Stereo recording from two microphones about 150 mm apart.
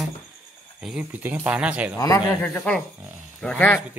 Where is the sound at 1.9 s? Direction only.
20° left (ahead or behind).